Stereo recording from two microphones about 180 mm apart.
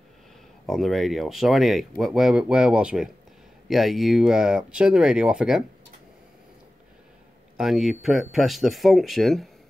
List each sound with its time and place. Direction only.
0.7 s speech: centre (ahead or behind)
7.5 s speech: centre (ahead or behind)